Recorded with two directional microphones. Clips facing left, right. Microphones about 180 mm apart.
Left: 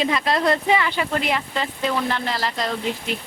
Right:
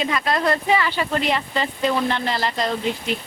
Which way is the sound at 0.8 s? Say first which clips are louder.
Right 1 dB; 10° left (ahead or behind).